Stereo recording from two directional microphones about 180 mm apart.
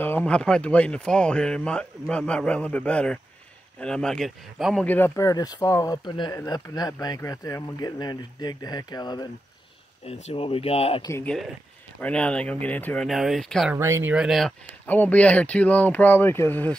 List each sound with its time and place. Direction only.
0.0 s speech: 10° left (ahead or behind)
4.8 s speech: 10° left (ahead or behind)
10.0 s speech: 35° left (ahead or behind)
11.0 s speech: 15° left (ahead or behind)
11.2 s speech: centre (ahead or behind)
13.7 s speech: 15° right (ahead or behind)
14.1 s speech: centre (ahead or behind)
14.9 s speech: 10° left (ahead or behind)